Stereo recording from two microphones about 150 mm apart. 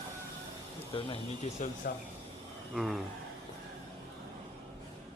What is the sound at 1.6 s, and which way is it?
Speech, 55° left (ahead or behind).